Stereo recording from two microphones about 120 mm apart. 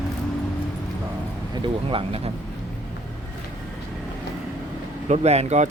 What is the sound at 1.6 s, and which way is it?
Speech, 50° right (ahead or behind).